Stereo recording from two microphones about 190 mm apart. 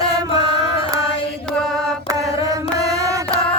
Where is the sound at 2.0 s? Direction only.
20° right (ahead or behind).